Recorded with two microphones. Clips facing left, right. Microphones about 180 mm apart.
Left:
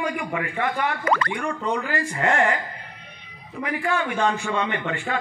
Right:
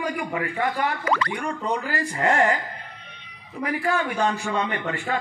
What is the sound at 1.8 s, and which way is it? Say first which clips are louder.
Speech: right 2 dB; 40° right (ahead or behind).